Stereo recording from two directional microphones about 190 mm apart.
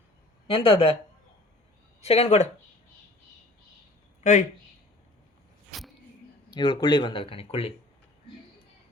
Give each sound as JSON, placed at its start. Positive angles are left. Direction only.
{"t": 0.4, "sound": "speech", "side_deg": 30}
{"t": 2.0, "sound": "speech", "side_deg": 35}
{"t": 4.2, "sound": "speech", "side_deg": 40}
{"t": 5.7, "sound": "a sound", "side_deg": 0}
{"t": 6.5, "sound": "speech", "side_deg": 25}